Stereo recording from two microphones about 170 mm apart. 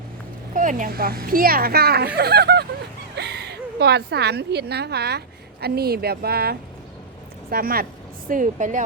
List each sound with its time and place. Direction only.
0.5 s a woman's voice: 50° right (ahead or behind)
8.3 s speech: 50° right (ahead or behind)